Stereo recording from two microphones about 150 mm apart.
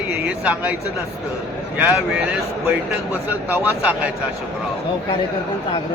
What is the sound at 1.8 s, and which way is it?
Speech, 10° right (ahead or behind).